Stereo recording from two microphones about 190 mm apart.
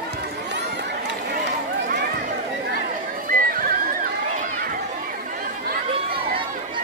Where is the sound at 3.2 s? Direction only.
50° right (ahead or behind).